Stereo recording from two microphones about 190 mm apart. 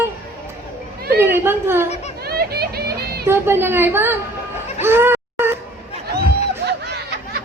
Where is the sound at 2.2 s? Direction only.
55° right (ahead or behind).